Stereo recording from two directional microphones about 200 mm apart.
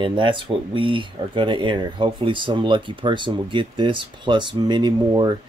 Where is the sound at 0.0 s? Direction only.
25° right (ahead or behind).